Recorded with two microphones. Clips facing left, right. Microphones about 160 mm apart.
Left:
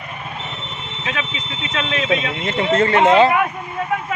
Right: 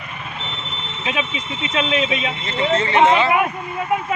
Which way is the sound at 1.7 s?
10° right (ahead or behind).